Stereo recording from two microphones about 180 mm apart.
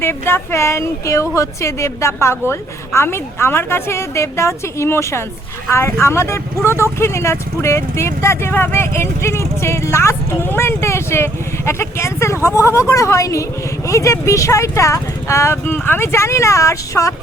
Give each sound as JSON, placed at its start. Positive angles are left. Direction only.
{"t": 0.0, "sound": "speech", "side_deg": 10}